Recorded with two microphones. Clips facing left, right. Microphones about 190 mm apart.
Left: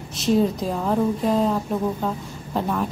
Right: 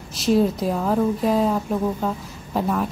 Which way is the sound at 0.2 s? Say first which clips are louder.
Right 1 dB; centre (ahead or behind).